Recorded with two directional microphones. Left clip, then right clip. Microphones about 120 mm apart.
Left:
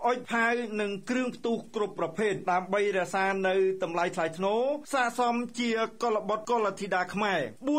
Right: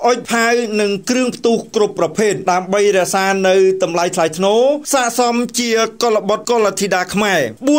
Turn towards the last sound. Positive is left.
turn(degrees=-45)  # may be behind; listen again after turning